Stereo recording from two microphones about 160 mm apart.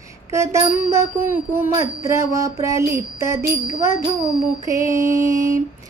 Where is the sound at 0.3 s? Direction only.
20° right (ahead or behind).